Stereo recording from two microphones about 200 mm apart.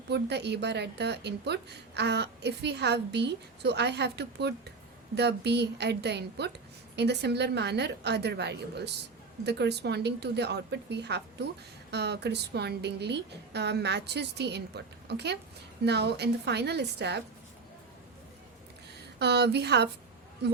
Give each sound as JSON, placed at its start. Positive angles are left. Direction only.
{"t": 0.1, "sound": "a woman's voice", "side_deg": -55}
{"t": 19.2, "sound": "a woman's voice", "side_deg": -55}